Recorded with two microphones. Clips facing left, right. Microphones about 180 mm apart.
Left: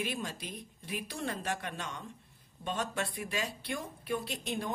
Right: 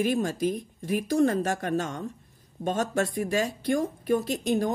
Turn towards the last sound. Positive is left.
turn(degrees=-45)  # may be behind; listen again after turning